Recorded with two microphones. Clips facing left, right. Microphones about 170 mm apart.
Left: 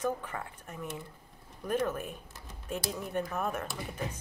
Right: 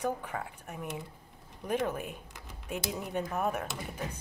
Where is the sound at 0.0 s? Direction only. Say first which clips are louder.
Even; 10° right (ahead or behind).